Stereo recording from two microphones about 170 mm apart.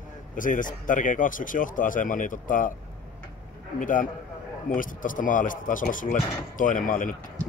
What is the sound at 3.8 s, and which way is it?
Speech, 50° left (ahead or behind).